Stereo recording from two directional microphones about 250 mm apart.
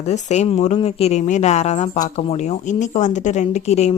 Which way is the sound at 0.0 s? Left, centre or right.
Left.